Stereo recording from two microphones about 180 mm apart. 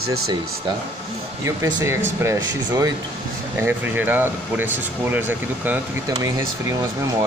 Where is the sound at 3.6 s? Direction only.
10° right (ahead or behind).